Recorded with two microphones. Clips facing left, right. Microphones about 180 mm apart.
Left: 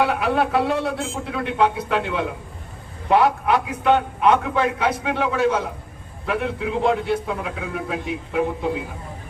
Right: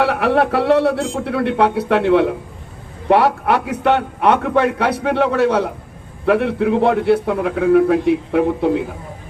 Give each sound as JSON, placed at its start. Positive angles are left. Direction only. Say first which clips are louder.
{"t": 0.0, "sound": "a man's voice", "louder": "right 4 dB", "side_deg": -70}